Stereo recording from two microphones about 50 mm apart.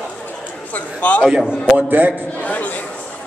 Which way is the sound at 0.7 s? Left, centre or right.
Left.